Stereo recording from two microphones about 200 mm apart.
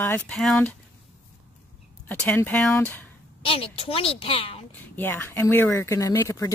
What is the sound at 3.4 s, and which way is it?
Speech, 25° left (ahead or behind).